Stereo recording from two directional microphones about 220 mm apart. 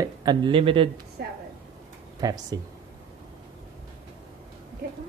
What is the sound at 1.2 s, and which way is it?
Speech, 45° right (ahead or behind).